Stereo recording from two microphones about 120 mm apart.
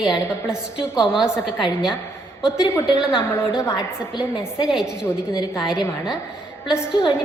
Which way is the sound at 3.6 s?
25° left (ahead or behind).